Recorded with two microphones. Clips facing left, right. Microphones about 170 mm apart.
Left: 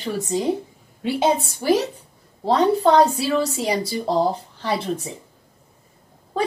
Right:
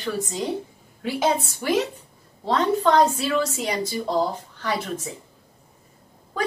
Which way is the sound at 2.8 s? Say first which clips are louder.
Left 3 dB; 35° left (ahead or behind).